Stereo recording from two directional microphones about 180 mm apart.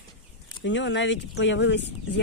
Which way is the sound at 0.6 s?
85° left.